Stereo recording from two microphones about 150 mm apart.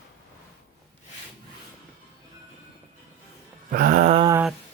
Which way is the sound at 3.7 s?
70° right (ahead or behind).